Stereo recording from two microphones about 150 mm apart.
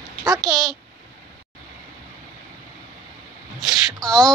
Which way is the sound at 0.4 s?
Centre (ahead or behind).